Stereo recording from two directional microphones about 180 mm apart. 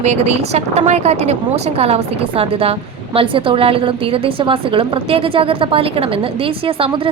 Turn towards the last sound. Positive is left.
turn(degrees=-30)  # may be behind; listen again after turning